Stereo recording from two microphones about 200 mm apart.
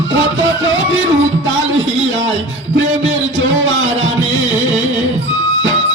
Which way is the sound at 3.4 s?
70° right (ahead or behind).